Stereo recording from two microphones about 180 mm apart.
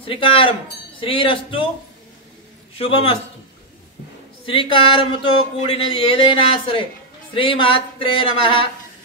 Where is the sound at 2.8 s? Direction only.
30° left (ahead or behind).